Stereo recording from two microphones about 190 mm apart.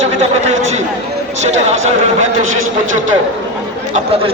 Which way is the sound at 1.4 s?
35° right (ahead or behind).